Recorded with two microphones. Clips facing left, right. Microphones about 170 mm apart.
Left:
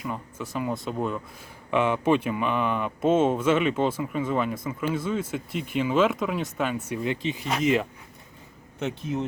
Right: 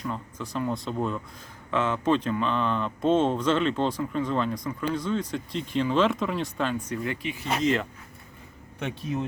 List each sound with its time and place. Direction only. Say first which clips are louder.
0.0 s speech: even; 5° left (ahead or behind)
7.0 s speech: left 3 dB; 20° left (ahead or behind)
8.8 s speech: left 2 dB; centre (ahead or behind)